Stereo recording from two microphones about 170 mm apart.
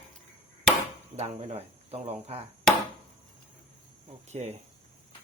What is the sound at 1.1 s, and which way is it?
Speech, 40° right (ahead or behind).